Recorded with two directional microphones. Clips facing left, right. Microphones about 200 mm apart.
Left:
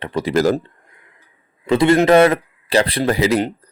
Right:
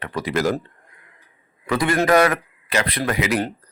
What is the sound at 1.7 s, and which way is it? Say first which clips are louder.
Speech: left 6 dB; 25° left (ahead or behind).